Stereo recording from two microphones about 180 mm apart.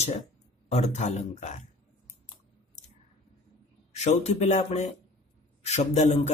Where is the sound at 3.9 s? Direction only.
40° left (ahead or behind).